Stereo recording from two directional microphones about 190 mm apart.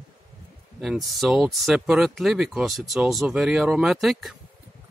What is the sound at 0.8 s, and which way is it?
Speech, centre (ahead or behind).